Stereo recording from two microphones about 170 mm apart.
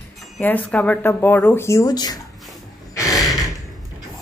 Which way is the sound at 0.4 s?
10° left (ahead or behind).